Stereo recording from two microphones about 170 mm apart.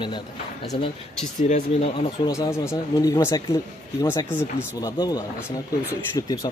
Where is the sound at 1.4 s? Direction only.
40° left (ahead or behind).